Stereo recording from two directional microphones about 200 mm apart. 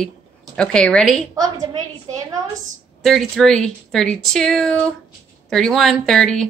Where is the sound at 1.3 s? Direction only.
20° right (ahead or behind).